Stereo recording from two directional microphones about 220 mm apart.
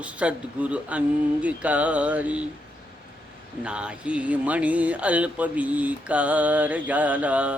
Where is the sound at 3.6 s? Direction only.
5° right (ahead or behind).